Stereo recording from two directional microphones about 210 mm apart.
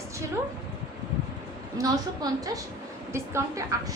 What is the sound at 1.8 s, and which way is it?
A woman's voice, 15° right (ahead or behind).